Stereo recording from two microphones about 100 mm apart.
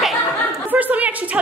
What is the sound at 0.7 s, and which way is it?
Speech, 15° right (ahead or behind).